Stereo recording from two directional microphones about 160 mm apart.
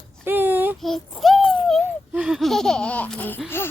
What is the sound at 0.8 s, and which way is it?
Laughter, centre (ahead or behind).